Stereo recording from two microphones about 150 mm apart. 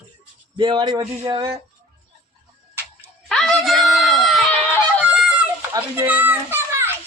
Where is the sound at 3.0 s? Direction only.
5° left (ahead or behind).